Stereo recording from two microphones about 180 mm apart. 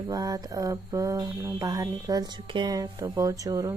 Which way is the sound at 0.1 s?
20° right (ahead or behind).